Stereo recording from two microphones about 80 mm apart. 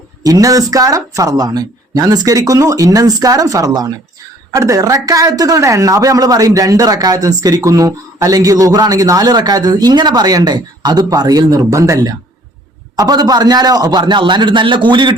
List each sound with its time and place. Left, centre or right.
0.2 s speech: right
14.0 s a man's voice: right